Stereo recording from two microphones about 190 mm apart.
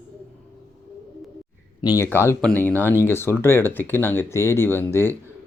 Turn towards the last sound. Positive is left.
turn(degrees=10)  # may be behind; listen again after turning